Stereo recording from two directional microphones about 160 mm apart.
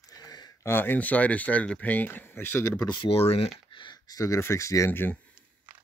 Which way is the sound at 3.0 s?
35° left (ahead or behind).